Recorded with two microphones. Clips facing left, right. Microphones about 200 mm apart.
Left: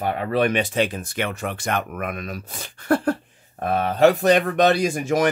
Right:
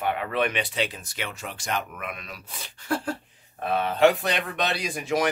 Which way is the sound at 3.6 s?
45° left (ahead or behind).